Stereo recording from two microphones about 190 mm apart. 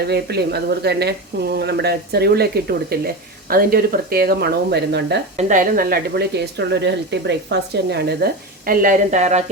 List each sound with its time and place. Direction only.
0.0 s a woman's voice: 60° right (ahead or behind)
5.4 s a woman's voice: 40° right (ahead or behind)